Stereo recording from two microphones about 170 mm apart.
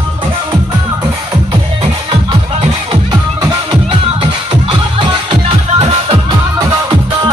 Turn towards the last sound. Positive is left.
turn(degrees=-30)  # may be behind; listen again after turning